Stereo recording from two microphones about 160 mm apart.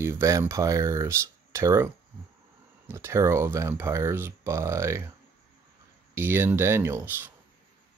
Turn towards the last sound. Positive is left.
turn(degrees=-15)  # may be behind; listen again after turning